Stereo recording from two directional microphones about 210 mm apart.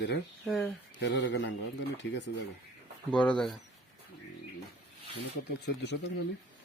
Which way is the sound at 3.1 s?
5° left (ahead or behind).